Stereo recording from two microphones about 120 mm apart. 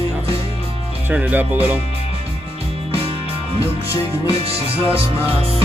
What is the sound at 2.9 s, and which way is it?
Music, 50° right (ahead or behind).